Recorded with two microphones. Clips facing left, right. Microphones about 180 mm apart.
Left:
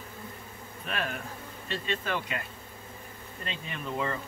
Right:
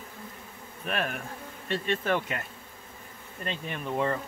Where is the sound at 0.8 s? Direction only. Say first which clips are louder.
Right 3 dB; 50° right (ahead or behind).